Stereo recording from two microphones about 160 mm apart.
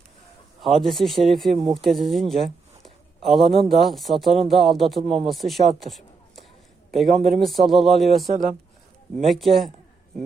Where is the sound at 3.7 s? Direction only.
Centre (ahead or behind).